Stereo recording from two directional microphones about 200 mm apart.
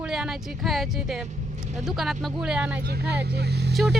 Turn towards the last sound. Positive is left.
turn(degrees=-55)  # may be behind; listen again after turning